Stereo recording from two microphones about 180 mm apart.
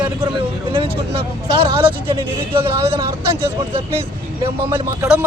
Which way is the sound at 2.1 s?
25° right (ahead or behind).